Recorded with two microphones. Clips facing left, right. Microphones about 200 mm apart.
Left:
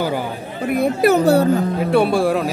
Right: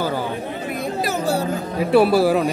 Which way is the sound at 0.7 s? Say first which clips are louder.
Left 11 dB; 60° left (ahead or behind).